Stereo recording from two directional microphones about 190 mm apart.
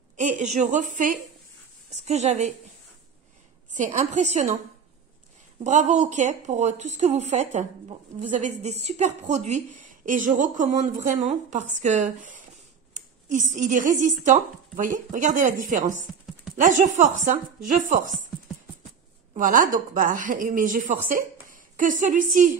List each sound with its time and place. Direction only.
0.2 s a woman's voice: 40° right (ahead or behind)
3.7 s a woman's voice: 40° right (ahead or behind)
5.6 s a woman's voice: 40° right (ahead or behind)
19.3 s a woman's voice: 45° right (ahead or behind)